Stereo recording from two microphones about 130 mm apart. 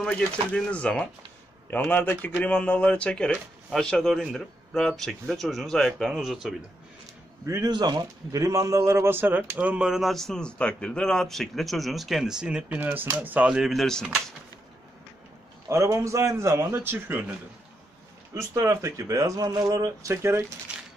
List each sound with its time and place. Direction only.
0.0 s speech: 5° left (ahead or behind)
7.4 s speech: 25° right (ahead or behind); by 14.0 s centre (ahead or behind)
15.7 s speech: 20° right (ahead or behind)